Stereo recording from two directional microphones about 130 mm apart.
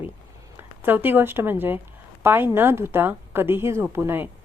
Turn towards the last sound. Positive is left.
turn(degrees=-15)  # may be behind; listen again after turning